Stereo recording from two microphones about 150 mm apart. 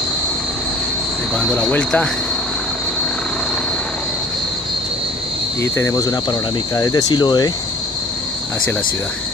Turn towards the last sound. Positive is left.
turn(degrees=25)  # may be behind; listen again after turning